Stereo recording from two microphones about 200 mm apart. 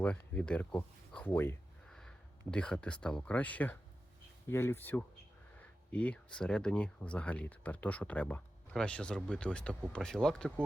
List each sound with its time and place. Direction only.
0.0 s speech: 5° left (ahead or behind)